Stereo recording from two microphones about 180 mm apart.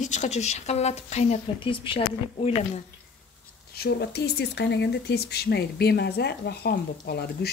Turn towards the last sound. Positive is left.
turn(degrees=60)  # may be behind; listen again after turning